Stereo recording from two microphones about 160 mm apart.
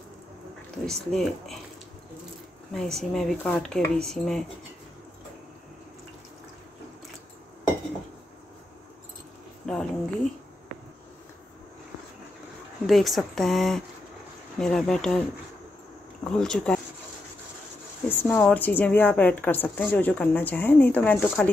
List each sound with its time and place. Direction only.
0.8 s speech: centre (ahead or behind)
2.7 s speech: centre (ahead or behind)
9.7 s speech: 5° left (ahead or behind)
12.8 s speech: centre (ahead or behind)
16.3 s speech: 5° left (ahead or behind)
18.0 s a woman's voice: 15° left (ahead or behind)